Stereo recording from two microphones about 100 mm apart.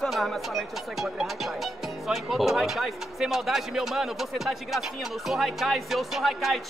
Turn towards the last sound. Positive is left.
turn(degrees=0)  # may be behind; listen again after turning